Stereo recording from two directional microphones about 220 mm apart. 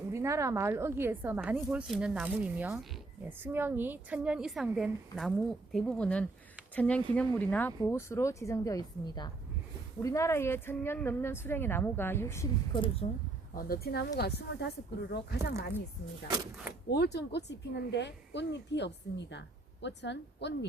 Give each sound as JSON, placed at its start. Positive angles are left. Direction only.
{"t": 0.1, "sound": "a woman's voice", "side_deg": -15}
{"t": 13.6, "sound": "a woman's voice", "side_deg": 45}
{"t": 16.9, "sound": "a woman's voice", "side_deg": 50}